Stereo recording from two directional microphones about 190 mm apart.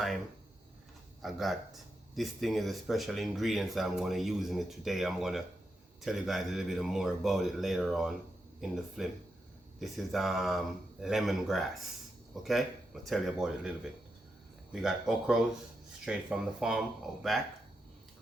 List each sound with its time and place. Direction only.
1.2 s speech: centre (ahead or behind)